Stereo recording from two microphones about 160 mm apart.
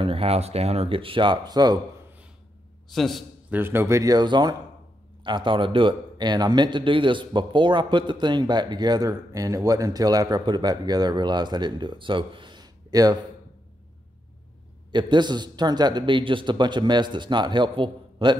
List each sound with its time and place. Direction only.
0.0 s speech: 35° right (ahead or behind)
2.9 s a man's voice: centre (ahead or behind)
3.4 s a man's voice: 15° right (ahead or behind)
14.9 s a man's voice: 30° right (ahead or behind)